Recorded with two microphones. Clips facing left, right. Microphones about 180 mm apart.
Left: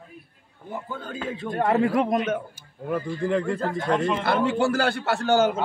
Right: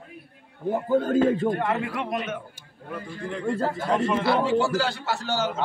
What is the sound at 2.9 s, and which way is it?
Speech, 80° left.